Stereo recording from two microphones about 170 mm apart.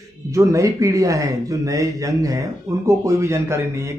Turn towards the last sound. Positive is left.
turn(degrees=-15)  # may be behind; listen again after turning